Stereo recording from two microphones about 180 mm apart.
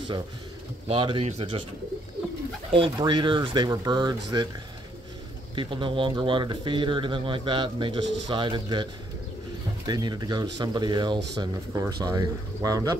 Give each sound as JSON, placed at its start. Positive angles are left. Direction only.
{"t": 0.8, "sound": "speech", "side_deg": -30}
{"t": 2.7, "sound": "speech", "side_deg": -25}
{"t": 5.6, "sound": "speech", "side_deg": -30}
{"t": 8.0, "sound": "speech", "side_deg": -85}
{"t": 8.3, "sound": "speech", "side_deg": -25}
{"t": 9.8, "sound": "speech", "side_deg": -20}